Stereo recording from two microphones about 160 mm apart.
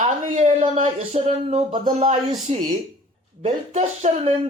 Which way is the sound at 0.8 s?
45° right (ahead or behind).